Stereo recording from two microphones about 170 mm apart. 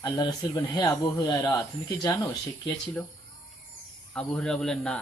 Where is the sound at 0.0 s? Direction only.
20° left (ahead or behind).